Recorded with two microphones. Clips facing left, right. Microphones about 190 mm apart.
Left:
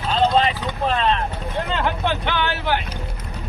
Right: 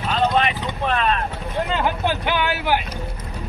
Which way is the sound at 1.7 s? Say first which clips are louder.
Even; 10° right (ahead or behind).